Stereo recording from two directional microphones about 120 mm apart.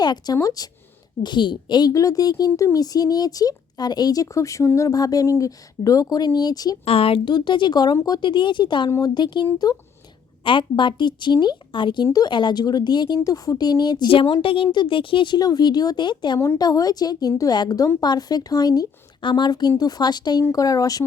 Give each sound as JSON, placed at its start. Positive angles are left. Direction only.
{"t": 0.0, "sound": "a woman's voice", "side_deg": 35}
{"t": 6.8, "sound": "a woman's voice", "side_deg": 55}